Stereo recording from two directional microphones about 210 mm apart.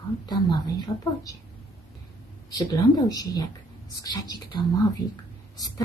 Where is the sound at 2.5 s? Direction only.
15° left (ahead or behind).